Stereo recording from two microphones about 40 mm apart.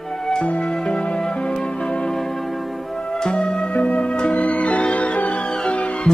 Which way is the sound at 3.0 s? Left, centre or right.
Centre.